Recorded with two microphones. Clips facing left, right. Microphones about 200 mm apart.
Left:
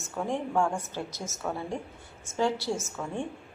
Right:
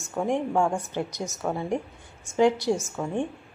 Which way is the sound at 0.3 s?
15° right (ahead or behind).